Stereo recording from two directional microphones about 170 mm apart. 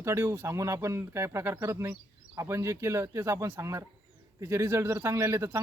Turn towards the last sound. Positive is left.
turn(degrees=-15)  # may be behind; listen again after turning